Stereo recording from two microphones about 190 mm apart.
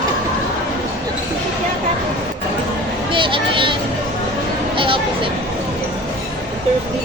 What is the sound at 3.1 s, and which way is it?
Speech, 25° right (ahead or behind).